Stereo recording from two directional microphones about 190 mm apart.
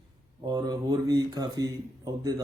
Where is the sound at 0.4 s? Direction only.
20° right (ahead or behind).